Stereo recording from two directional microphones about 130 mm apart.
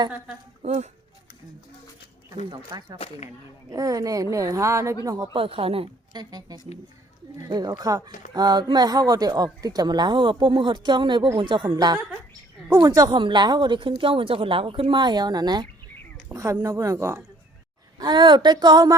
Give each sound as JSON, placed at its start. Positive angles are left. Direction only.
{"t": 0.6, "sound": "speech", "side_deg": -60}
{"t": 2.5, "sound": "a woman's voice", "side_deg": -40}
{"t": 5.3, "sound": "speech", "side_deg": -45}
{"t": 6.1, "sound": "a woman's voice", "side_deg": -35}
{"t": 17.9, "sound": "speech", "side_deg": -35}